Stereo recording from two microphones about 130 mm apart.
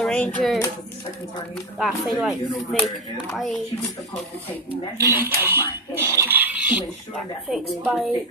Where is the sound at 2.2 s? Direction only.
Centre (ahead or behind).